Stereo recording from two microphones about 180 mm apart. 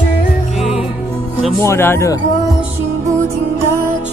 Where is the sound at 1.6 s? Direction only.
15° left (ahead or behind).